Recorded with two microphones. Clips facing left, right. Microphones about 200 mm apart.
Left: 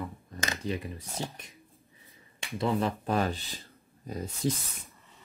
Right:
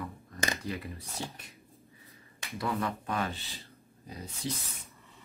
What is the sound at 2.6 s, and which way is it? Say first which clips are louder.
Speech: left 4 dB; 25° left (ahead or behind).